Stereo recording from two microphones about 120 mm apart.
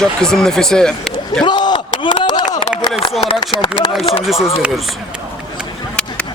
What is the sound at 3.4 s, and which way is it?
Speech, 40° left (ahead or behind).